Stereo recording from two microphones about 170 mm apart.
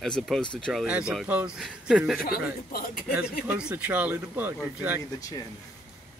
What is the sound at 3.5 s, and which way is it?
Speech, 5° right (ahead or behind).